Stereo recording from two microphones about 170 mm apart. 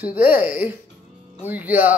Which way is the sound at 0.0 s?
10° right (ahead or behind).